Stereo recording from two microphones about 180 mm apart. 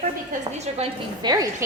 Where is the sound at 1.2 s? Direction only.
20° right (ahead or behind).